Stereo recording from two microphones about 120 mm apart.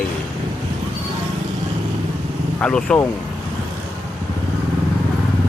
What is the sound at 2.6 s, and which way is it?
Speech, 10° left (ahead or behind).